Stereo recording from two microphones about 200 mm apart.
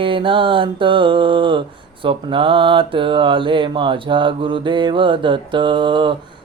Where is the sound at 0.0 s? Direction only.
25° right (ahead or behind).